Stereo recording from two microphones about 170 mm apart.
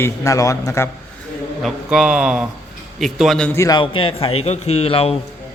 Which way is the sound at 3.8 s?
30° left (ahead or behind).